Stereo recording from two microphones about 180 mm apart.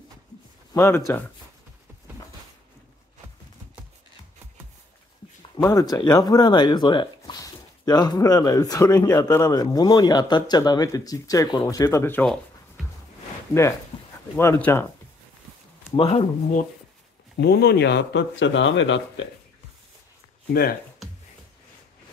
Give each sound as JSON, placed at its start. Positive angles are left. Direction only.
{"t": 0.7, "sound": "speech", "side_deg": 15}
{"t": 5.6, "sound": "speech", "side_deg": 20}
{"t": 13.9, "sound": "a sound", "side_deg": 30}
{"t": 14.3, "sound": "speech", "side_deg": 10}
{"t": 16.0, "sound": "speech", "side_deg": 35}
{"t": 17.4, "sound": "speech", "side_deg": 65}